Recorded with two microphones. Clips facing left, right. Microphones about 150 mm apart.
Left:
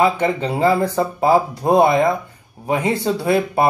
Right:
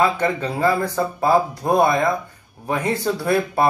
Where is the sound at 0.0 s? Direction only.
20° left (ahead or behind).